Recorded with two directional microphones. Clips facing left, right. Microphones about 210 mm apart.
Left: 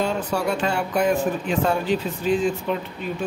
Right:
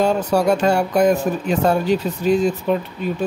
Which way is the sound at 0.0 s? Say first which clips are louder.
Right 6 dB; 40° right (ahead or behind).